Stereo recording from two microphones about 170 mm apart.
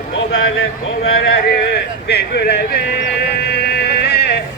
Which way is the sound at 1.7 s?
75° left (ahead or behind).